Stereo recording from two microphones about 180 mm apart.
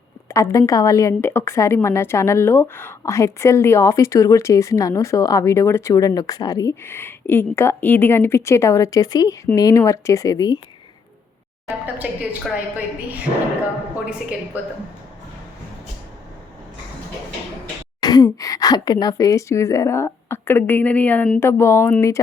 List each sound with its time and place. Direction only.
0.3 s a woman's voice: 15° left (ahead or behind)
11.9 s a woman's voice: 10° right (ahead or behind)
14.5 s a woman's voice: 10° right (ahead or behind)
18.0 s a woman's voice: 20° left (ahead or behind)